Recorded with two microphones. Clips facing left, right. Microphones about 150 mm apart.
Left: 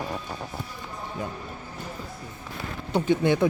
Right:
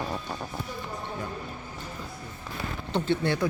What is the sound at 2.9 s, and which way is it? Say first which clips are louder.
Speech: left 5 dB; 15° left (ahead or behind).